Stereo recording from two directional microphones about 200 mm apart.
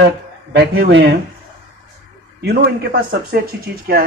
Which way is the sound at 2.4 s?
55° right (ahead or behind).